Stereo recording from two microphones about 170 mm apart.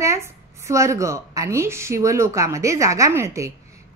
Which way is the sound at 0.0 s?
15° right (ahead or behind).